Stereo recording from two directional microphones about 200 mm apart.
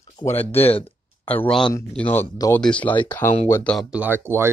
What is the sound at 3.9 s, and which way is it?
Speech, 10° right (ahead or behind).